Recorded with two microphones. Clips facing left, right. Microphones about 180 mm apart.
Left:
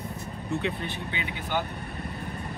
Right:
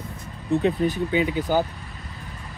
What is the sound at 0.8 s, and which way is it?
Speech, 40° right (ahead or behind).